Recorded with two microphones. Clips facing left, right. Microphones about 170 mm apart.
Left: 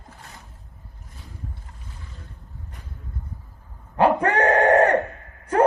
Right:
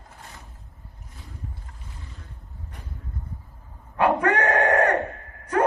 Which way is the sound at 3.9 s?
30° left (ahead or behind).